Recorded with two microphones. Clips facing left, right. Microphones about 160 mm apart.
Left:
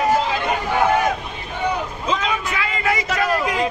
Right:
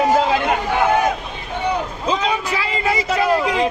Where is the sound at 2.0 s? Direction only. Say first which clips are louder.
Right 3 dB; 35° right (ahead or behind).